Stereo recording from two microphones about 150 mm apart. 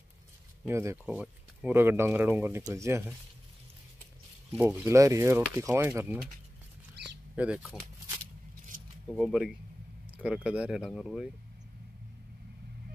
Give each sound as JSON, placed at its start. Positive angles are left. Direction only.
{"t": 0.7, "sound": "speech", "side_deg": -20}
{"t": 1.0, "sound": "speech", "side_deg": -10}
{"t": 4.6, "sound": "speech", "side_deg": -15}
{"t": 7.3, "sound": "speech", "side_deg": -5}
{"t": 9.1, "sound": "speech", "side_deg": 0}